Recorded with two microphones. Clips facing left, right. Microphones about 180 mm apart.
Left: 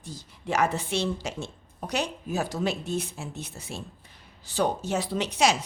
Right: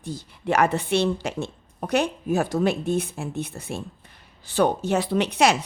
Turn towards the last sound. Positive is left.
turn(degrees=-60)  # may be behind; listen again after turning